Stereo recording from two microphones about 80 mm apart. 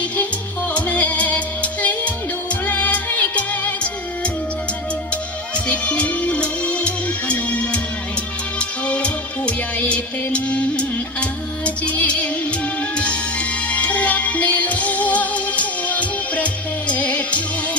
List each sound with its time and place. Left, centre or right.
0.7 s music: centre
5.6 s music: centre
13.7 s music: centre